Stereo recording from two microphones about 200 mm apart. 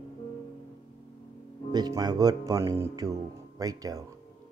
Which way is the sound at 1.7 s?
20° right (ahead or behind).